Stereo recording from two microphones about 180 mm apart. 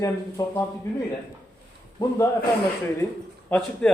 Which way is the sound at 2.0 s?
15° left (ahead or behind).